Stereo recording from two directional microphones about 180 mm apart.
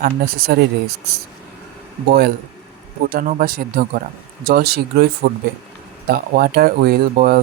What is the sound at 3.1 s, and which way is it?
Speech, 55° right (ahead or behind).